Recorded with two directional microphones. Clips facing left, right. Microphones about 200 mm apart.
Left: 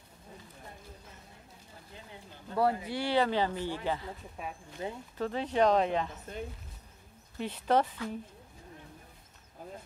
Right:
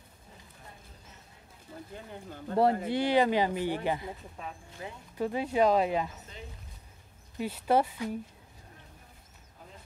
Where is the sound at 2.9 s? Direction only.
15° right (ahead or behind).